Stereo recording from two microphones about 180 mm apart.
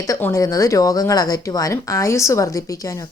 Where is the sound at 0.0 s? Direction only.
15° left (ahead or behind).